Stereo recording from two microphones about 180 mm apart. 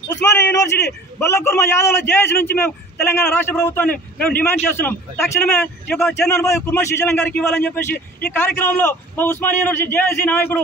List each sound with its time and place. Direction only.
0.1 s a man's voice: 15° left (ahead or behind)
3.9 s a man's voice: 55° left (ahead or behind)
4.6 s a man's voice: 10° left (ahead or behind)